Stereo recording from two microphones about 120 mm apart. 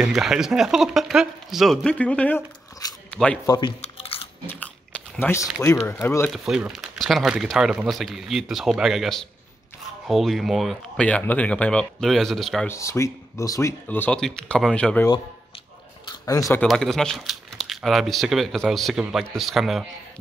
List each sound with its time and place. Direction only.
0.0 s speech: 5° right (ahead or behind); by 2.4 s 10° left (ahead or behind)
3.1 s squish: 10° left (ahead or behind)
3.4 s speech: 40° left (ahead or behind)
3.8 s chewing: 55° left (ahead or behind)
5.2 s speech: 10° left (ahead or behind)
6.3 s speech: centre (ahead or behind)
12.6 s speech: 25° left (ahead or behind)
13.8 s speech: 15° left (ahead or behind)
16.1 s a sound: 30° left (ahead or behind)
16.6 s speech: centre (ahead or behind)